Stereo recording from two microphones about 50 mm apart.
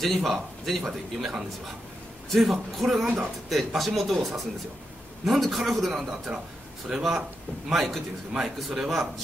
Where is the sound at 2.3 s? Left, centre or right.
Centre.